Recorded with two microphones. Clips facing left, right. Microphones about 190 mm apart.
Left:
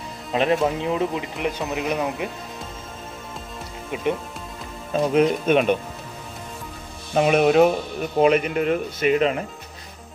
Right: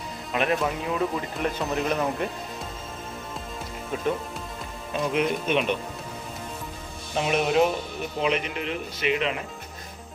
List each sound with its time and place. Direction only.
0.3 s speech: 30° left (ahead or behind)
1.1 s speech: 15° left (ahead or behind)
3.9 s speech: 10° left (ahead or behind)
5.1 s speech: 45° left (ahead or behind)
7.2 s speech: 55° left (ahead or behind)